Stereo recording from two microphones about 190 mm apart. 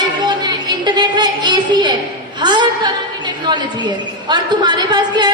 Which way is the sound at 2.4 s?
25° right (ahead or behind).